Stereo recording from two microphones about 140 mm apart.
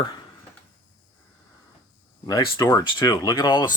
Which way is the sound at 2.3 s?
30° left (ahead or behind).